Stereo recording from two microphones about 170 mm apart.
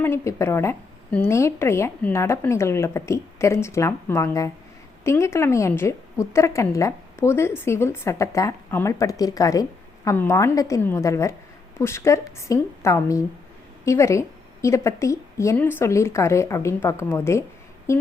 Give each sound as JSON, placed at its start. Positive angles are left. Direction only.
{"t": 0.0, "sound": "a woman's voice", "side_deg": 15}